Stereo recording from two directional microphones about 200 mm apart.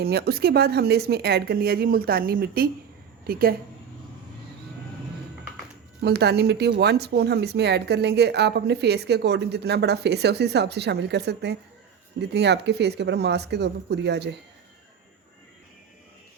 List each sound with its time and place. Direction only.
0.0 s speech: 50° right (ahead or behind)
6.0 s speech: 55° right (ahead or behind)